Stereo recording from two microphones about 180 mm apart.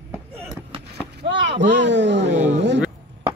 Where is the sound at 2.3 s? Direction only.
40° right (ahead or behind).